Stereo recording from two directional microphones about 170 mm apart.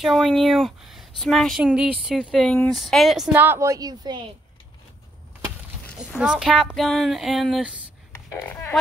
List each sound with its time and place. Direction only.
0.0 s a woman's voice: centre (ahead or behind)
3.3 s a woman's voice: 15° right (ahead or behind)
5.9 s a woman's voice: 5° right (ahead or behind)
8.1 s a sound: 15° left (ahead or behind)